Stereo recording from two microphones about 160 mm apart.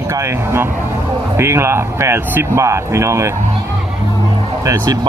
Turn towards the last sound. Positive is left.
turn(degrees=-25)  # may be behind; listen again after turning